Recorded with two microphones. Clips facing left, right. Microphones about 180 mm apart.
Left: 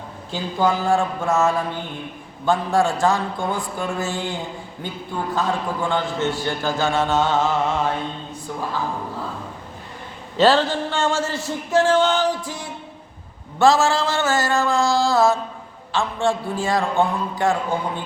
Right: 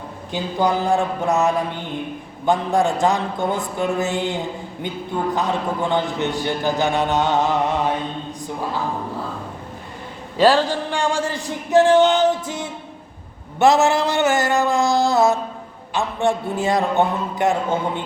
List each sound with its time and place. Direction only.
0.3 s a man's voice: 20° right (ahead or behind)
10.3 s a man's voice: 10° right (ahead or behind)